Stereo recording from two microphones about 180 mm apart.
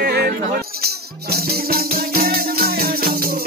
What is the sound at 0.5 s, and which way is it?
Music, 60° right (ahead or behind).